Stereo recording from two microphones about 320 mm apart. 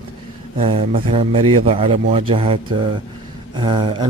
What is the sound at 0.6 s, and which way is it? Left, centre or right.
Speech, centre.